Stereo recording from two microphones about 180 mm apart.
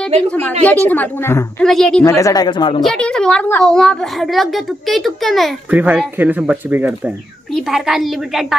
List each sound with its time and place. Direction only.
0.3 s a woman's voice: 5° left (ahead or behind)
2.0 s speech: 15° left (ahead or behind)
2.8 s a woman's voice: 5° left (ahead or behind)